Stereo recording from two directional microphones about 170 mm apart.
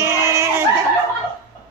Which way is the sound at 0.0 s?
20° right (ahead or behind).